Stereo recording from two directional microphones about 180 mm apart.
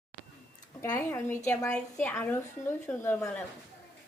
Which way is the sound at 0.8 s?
15° left (ahead or behind).